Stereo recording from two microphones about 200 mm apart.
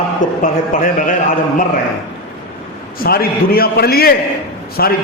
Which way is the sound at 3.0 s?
50° left (ahead or behind).